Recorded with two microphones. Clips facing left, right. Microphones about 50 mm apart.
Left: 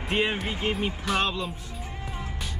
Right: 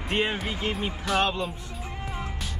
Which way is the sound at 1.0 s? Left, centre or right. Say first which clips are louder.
Right 3 dB; centre.